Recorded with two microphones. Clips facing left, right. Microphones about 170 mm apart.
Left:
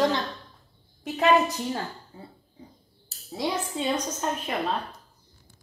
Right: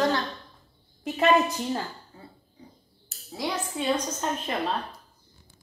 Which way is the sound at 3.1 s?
35° left (ahead or behind).